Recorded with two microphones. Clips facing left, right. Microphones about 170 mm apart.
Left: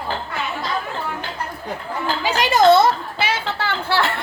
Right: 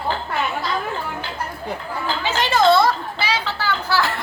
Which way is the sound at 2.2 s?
15° left (ahead or behind).